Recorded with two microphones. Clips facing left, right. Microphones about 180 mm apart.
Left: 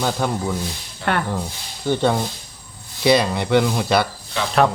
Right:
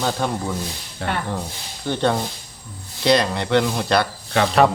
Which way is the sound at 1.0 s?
65° right (ahead or behind).